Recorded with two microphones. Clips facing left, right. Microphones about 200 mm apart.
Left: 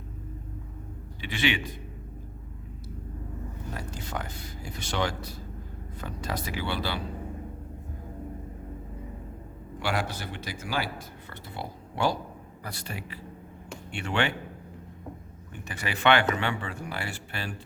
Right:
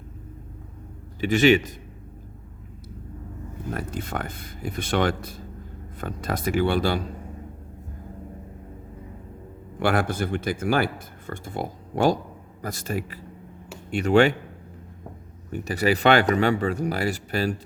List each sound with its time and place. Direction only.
1.2 s speech: 45° right (ahead or behind)
3.8 s speech: 55° right (ahead or behind)
9.8 s speech: 55° right (ahead or behind)
15.5 s speech: 40° right (ahead or behind)